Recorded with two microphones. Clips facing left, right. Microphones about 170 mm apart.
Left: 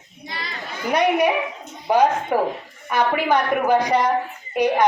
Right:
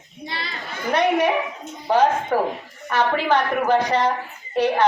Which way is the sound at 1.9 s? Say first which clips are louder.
Even; 10° left (ahead or behind).